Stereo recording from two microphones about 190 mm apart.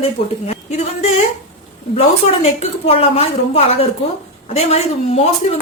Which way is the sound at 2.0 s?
30° left (ahead or behind).